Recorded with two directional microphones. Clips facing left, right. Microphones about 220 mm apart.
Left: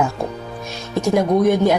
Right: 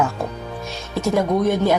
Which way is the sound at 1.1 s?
15° left (ahead or behind).